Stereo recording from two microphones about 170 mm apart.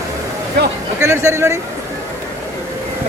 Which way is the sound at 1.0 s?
15° right (ahead or behind).